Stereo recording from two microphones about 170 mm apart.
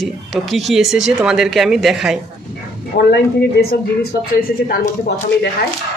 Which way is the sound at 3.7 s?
60° left (ahead or behind).